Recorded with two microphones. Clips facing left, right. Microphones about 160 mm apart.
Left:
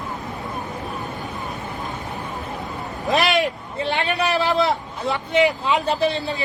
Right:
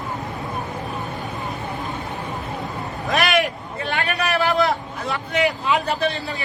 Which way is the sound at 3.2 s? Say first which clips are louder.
Even; 25° left (ahead or behind).